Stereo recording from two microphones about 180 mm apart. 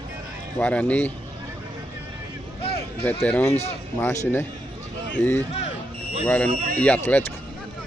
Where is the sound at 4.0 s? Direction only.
15° left (ahead or behind).